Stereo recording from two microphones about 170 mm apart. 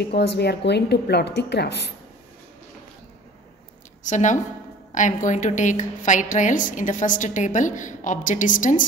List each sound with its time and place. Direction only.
0.1 s a woman's voice: 75° left (ahead or behind)
4.0 s a woman's voice: 45° left (ahead or behind)